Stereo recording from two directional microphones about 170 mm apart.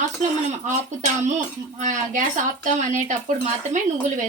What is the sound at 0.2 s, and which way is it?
Speech, 45° right (ahead or behind).